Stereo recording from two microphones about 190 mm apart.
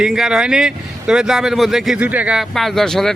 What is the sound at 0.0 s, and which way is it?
Speech, centre (ahead or behind).